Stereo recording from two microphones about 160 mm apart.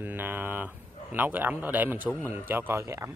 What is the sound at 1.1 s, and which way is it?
Speech, 10° right (ahead or behind).